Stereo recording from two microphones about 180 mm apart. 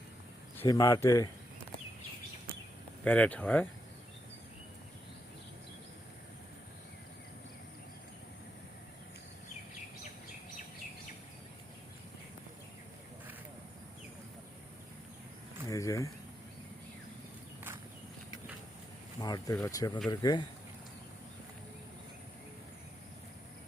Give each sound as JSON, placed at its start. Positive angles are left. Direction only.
{"t": 0.6, "sound": "speech", "side_deg": 20}
{"t": 3.0, "sound": "speech", "side_deg": 10}
{"t": 15.6, "sound": "a sound", "side_deg": 20}
{"t": 19.2, "sound": "speech", "side_deg": 25}